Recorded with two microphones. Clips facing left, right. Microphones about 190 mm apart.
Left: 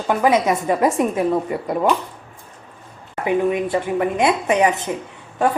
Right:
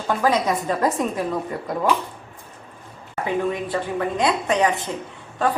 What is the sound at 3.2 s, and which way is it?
A woman's voice, 15° left (ahead or behind).